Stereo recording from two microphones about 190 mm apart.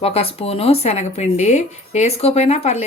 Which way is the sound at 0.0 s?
30° left (ahead or behind).